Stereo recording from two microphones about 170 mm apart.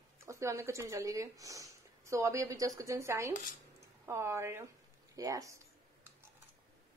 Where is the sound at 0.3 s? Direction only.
15° right (ahead or behind).